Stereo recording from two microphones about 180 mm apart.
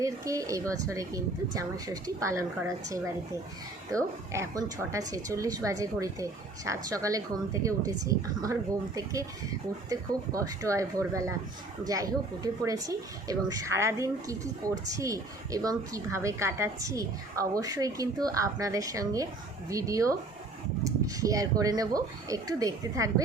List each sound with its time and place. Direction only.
0.0 s a woman's voice: 20° right (ahead or behind)
9.9 s a woman's voice: 20° right (ahead or behind)